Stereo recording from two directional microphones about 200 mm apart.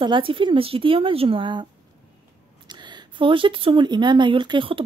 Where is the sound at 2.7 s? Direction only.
20° right (ahead or behind).